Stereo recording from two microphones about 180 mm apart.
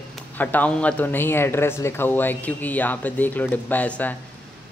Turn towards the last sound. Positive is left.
turn(degrees=10)  # may be behind; listen again after turning